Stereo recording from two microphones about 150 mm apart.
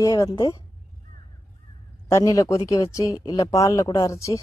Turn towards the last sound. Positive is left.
turn(degrees=20)  # may be behind; listen again after turning